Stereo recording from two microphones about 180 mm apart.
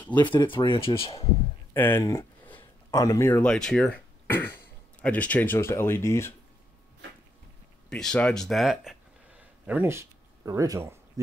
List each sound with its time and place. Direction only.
0.1 s speech: 25° left (ahead or behind)
1.7 s speech: 15° left (ahead or behind)
7.9 s speech: 5° left (ahead or behind)
9.7 s speech: 10° right (ahead or behind)